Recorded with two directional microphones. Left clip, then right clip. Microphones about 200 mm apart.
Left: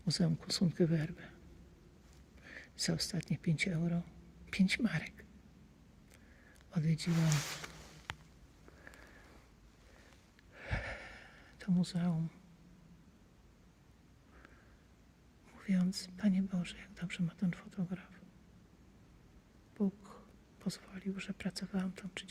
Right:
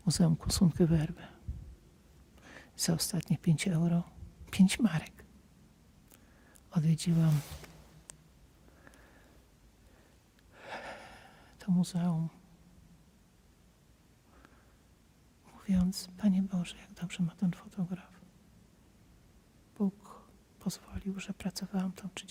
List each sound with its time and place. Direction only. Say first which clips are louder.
0.0 s speech: right 4 dB; 40° right (ahead or behind)
2.4 s speech: right 2 dB; 40° right (ahead or behind)
6.7 s speech: right 4 dB; 40° right (ahead or behind)
10.5 s gasp: even; 30° right (ahead or behind)
15.4 s speech: right 3 dB; 30° right (ahead or behind)
19.7 s speech: right 2 dB; 30° right (ahead or behind)